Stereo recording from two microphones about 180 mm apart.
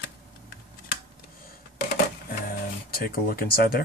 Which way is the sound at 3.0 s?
55° left (ahead or behind).